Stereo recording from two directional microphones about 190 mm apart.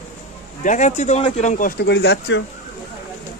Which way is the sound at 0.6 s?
40° left (ahead or behind).